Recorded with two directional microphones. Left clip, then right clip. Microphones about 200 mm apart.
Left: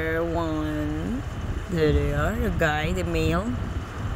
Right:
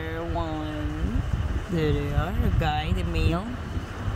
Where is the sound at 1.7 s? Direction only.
15° left (ahead or behind).